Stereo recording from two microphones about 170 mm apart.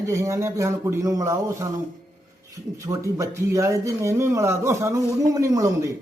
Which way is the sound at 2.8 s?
20° right (ahead or behind).